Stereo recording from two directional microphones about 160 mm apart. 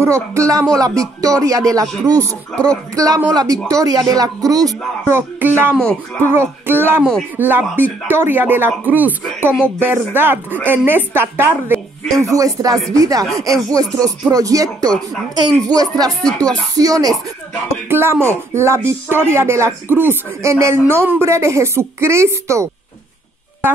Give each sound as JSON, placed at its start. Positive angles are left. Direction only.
{"t": 0.0, "sound": "speech", "side_deg": -20}